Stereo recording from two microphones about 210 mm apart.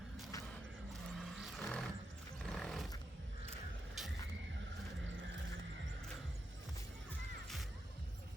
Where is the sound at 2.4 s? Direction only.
Centre (ahead or behind).